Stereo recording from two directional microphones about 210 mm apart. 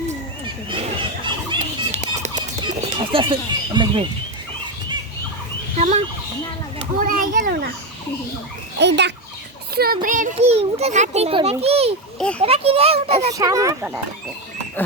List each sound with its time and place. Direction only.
0.4 s a sound: 25° right (ahead or behind)
5.7 s turkey: 35° right (ahead or behind)
7.0 s a child's voice: 40° right (ahead or behind)
8.8 s a child's voice: 55° right (ahead or behind); by 13.3 s 30° right (ahead or behind)
13.3 s speech: 15° right (ahead or behind)